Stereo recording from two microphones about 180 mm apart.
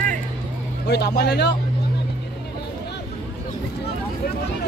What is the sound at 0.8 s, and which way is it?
Speech, 65° left (ahead or behind).